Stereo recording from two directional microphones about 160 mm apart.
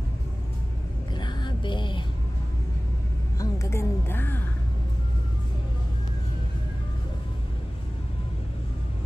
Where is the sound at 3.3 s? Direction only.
20° left (ahead or behind).